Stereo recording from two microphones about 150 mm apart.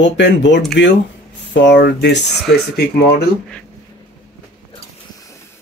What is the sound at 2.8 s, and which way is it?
Speech, 90° left.